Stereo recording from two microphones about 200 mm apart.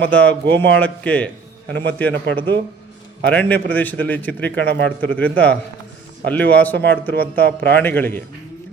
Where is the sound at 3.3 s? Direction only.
10° left (ahead or behind).